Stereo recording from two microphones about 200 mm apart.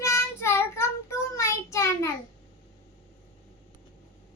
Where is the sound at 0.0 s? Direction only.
15° left (ahead or behind).